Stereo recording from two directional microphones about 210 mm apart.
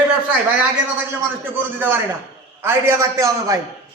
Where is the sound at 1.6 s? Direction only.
10° right (ahead or behind).